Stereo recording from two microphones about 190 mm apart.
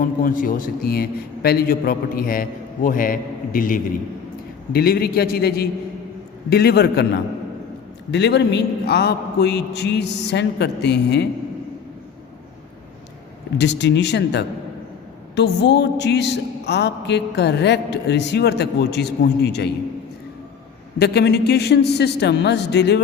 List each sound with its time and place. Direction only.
0.0 s a man's voice: 45° left (ahead or behind); by 11.3 s 65° left (ahead or behind)
13.6 s a man's voice: 65° left (ahead or behind)
21.0 s a man's voice: 60° left (ahead or behind)